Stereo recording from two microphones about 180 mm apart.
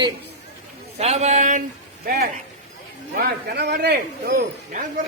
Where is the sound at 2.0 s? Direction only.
60° right (ahead or behind).